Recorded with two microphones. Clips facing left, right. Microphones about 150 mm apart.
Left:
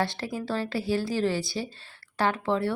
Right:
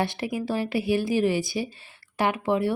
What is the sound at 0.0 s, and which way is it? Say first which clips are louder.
Speech: right 2 dB; 15° right (ahead or behind).